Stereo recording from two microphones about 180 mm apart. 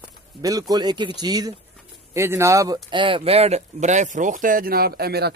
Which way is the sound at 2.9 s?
30° right (ahead or behind).